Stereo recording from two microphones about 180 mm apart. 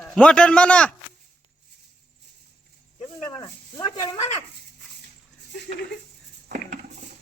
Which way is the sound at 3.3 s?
25° left (ahead or behind).